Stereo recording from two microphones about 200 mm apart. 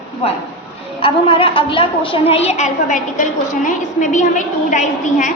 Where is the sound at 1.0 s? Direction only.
25° left (ahead or behind).